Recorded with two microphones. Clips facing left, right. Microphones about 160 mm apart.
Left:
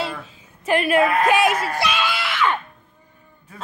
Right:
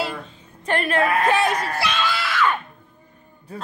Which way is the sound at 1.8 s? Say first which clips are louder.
Left 1 dB; 15° left (ahead or behind).